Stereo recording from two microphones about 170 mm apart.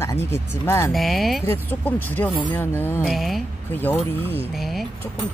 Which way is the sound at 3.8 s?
10° left (ahead or behind).